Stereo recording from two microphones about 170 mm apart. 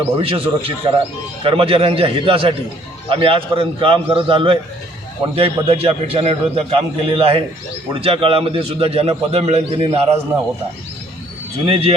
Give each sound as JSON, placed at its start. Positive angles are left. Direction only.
{"t": 0.2, "sound": "a man's voice", "side_deg": -35}
{"t": 11.6, "sound": "a man's voice", "side_deg": -35}